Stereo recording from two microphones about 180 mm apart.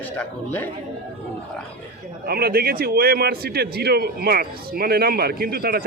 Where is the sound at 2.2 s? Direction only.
60° right (ahead or behind).